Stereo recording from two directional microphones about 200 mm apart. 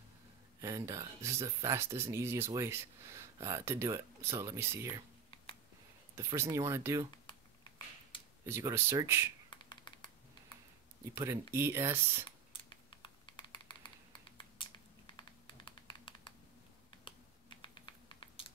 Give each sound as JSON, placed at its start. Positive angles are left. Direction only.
{"t": 0.6, "sound": "speech", "side_deg": -15}
{"t": 6.1, "sound": "speech", "side_deg": -15}
{"t": 8.5, "sound": "speech", "side_deg": -10}
{"t": 9.5, "sound": "a sound", "side_deg": 25}
{"t": 11.1, "sound": "speech", "side_deg": -15}
{"t": 12.6, "sound": "typing", "side_deg": 25}
{"t": 17.6, "sound": "typing", "side_deg": 25}